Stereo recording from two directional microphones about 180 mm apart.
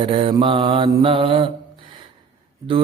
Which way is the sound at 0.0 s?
30° right (ahead or behind).